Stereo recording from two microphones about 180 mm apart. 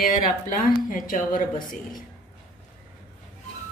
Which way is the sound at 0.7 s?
50° left (ahead or behind).